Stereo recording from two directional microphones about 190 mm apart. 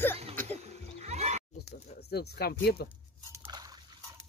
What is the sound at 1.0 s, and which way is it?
Neigh, 35° right (ahead or behind).